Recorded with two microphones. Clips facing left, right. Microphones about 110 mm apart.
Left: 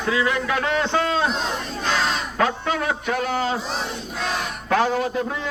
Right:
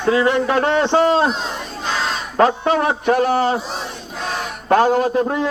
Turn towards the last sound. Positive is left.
turn(degrees=-50)  # may be behind; listen again after turning